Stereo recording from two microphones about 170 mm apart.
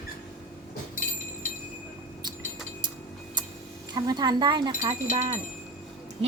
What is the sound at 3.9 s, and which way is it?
Speech, 25° right (ahead or behind).